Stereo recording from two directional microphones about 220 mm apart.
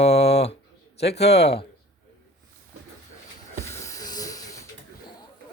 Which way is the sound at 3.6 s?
10° left (ahead or behind).